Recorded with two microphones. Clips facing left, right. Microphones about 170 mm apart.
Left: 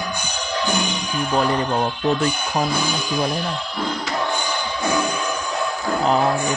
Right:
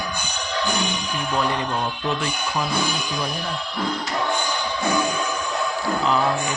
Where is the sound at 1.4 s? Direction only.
40° left (ahead or behind).